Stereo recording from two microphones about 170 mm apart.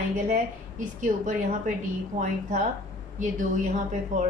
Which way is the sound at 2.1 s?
45° right (ahead or behind).